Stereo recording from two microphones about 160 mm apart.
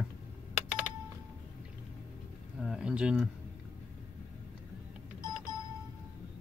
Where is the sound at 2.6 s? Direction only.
Centre (ahead or behind).